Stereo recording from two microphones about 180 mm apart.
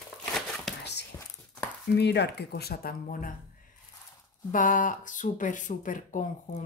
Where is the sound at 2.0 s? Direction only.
65° left (ahead or behind); by 3.3 s 50° left (ahead or behind).